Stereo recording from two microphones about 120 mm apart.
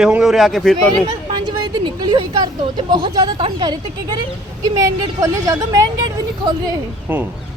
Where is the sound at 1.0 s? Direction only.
40° right (ahead or behind).